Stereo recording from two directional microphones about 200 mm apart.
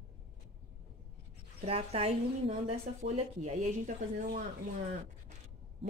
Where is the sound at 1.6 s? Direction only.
30° right (ahead or behind).